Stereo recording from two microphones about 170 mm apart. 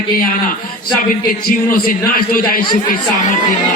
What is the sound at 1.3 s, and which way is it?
A man's voice, 55° left (ahead or behind).